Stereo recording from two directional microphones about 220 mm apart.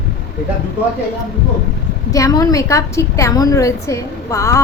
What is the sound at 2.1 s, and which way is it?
A woman's voice, 15° left (ahead or behind).